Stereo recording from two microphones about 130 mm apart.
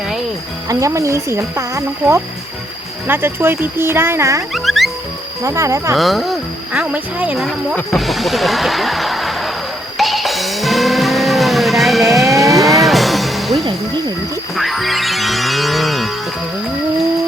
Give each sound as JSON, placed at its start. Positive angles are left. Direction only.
{"t": 0.7, "sound": "speech", "side_deg": -25}
{"t": 4.5, "sound": "music", "side_deg": 0}
{"t": 5.4, "sound": "speech", "side_deg": -25}
{"t": 6.0, "sound": "speech", "side_deg": 0}
{"t": 7.9, "sound": "speech", "side_deg": 0}
{"t": 10.0, "sound": "music", "side_deg": 0}